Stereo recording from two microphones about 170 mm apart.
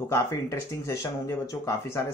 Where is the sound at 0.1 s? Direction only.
15° left (ahead or behind).